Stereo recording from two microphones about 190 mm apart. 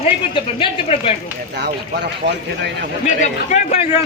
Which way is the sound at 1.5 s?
60° right (ahead or behind).